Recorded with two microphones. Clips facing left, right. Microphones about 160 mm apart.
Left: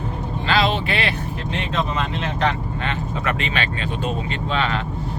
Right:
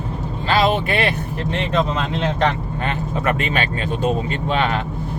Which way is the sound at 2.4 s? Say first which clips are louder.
Right 2 dB; 45° right (ahead or behind).